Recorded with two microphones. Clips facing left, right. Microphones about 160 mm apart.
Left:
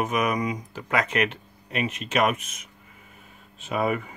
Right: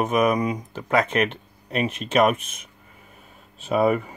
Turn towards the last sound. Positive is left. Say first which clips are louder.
# right 6 dB
turn(degrees=-40)  # may be behind; listen again after turning